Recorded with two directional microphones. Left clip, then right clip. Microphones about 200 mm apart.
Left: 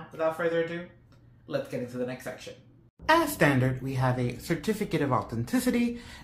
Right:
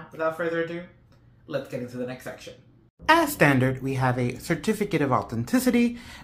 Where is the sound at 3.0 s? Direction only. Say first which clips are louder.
Right 4 dB; 35° right (ahead or behind).